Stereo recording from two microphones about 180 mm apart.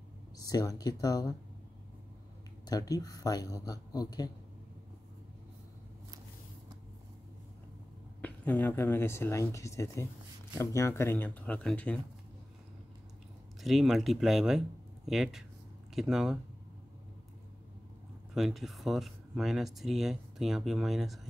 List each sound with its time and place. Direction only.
0.5 s speech: 20° left (ahead or behind)
2.6 s speech: 20° left (ahead or behind)
8.2 s speech: 10° left (ahead or behind)
13.6 s speech: centre (ahead or behind)
18.3 s speech: centre (ahead or behind)